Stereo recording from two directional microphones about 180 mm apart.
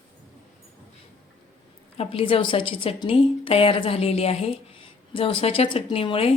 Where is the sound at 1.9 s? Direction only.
30° left (ahead or behind).